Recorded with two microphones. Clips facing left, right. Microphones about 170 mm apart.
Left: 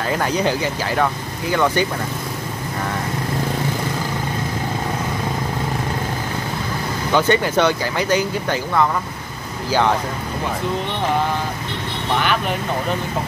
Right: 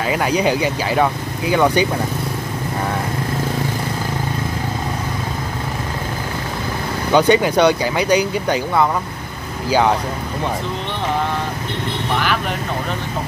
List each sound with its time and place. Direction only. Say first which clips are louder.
0.0 s speech: right 2 dB; 10° right (ahead or behind)
7.2 s speech: right 3 dB; 15° right (ahead or behind)